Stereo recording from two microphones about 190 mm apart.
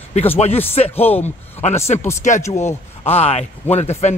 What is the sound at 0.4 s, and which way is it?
A man's voice, 35° left (ahead or behind).